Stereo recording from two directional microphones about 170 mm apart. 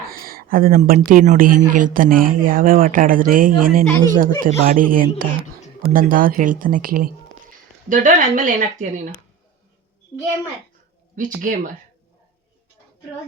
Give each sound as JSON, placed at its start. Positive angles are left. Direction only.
{"t": 0.1, "sound": "speech", "side_deg": -60}
{"t": 11.1, "sound": "speech", "side_deg": -50}